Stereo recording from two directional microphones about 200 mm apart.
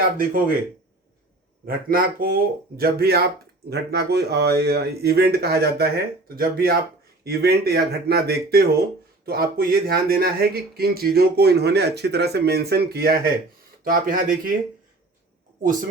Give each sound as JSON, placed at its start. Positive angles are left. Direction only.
{"t": 1.6, "sound": "speech", "side_deg": -45}